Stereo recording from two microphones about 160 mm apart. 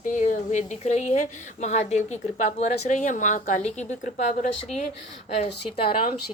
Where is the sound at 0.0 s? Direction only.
55° left (ahead or behind).